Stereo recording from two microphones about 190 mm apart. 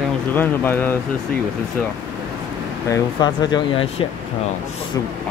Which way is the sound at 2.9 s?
20° left (ahead or behind).